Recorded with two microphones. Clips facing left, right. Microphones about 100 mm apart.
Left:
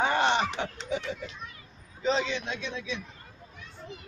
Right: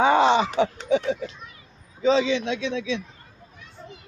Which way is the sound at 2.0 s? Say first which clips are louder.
Right 8 dB; 90° right.